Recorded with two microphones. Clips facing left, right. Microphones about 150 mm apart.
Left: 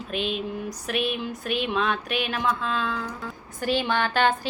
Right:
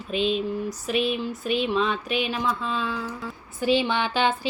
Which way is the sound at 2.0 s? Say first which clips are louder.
Right 2 dB; 50° left (ahead or behind).